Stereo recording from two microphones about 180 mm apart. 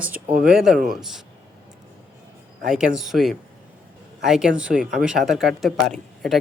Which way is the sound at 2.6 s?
5° right (ahead or behind).